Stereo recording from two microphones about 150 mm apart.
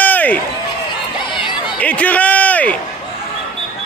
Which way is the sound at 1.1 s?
30° left (ahead or behind).